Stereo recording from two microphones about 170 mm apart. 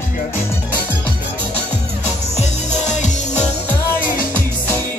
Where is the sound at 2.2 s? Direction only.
40° left (ahead or behind).